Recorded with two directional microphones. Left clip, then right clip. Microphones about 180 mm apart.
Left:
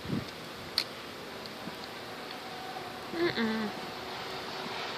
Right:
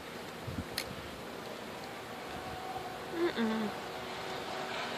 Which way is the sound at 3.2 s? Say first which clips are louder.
Left 3 dB; centre (ahead or behind).